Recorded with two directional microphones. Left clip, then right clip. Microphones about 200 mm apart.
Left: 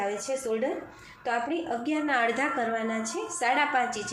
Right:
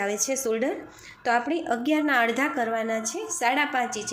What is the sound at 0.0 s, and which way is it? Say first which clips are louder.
A woman's voice: right 3 dB; 35° right (ahead or behind).